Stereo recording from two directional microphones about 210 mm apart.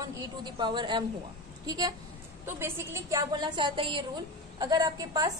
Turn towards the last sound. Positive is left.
turn(degrees=-15)  # may be behind; listen again after turning